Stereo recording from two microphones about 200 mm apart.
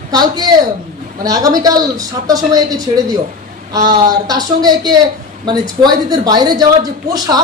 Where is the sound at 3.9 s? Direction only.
20° right (ahead or behind).